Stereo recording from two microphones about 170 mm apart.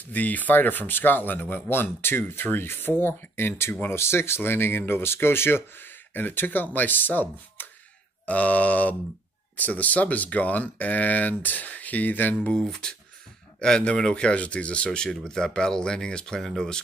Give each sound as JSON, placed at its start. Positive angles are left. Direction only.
{"t": 0.0, "sound": "speech", "side_deg": 10}